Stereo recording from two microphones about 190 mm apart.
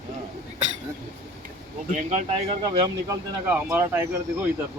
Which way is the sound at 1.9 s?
40° right (ahead or behind).